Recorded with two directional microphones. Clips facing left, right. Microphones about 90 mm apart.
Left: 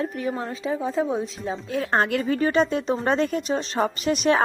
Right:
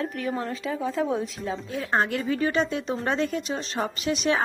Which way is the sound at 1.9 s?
60° left (ahead or behind).